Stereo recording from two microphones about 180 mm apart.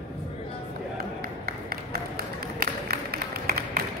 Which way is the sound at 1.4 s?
60° right (ahead or behind).